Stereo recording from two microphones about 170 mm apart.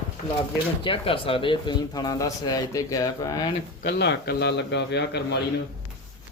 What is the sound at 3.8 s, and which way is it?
A man's voice, 80° left.